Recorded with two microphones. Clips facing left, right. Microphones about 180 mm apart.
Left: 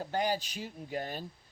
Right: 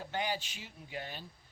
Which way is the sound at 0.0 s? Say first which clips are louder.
Left 5 dB; 40° left (ahead or behind).